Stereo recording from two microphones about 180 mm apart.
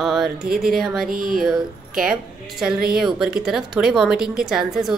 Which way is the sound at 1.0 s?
55° right (ahead or behind).